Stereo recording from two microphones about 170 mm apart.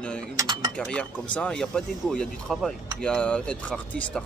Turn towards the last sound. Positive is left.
turn(degrees=5)  # may be behind; listen again after turning